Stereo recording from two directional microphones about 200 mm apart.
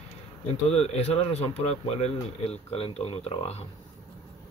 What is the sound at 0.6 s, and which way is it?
Speech, 30° left (ahead or behind).